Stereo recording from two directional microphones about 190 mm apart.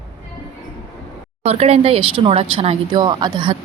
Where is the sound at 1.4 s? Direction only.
35° right (ahead or behind).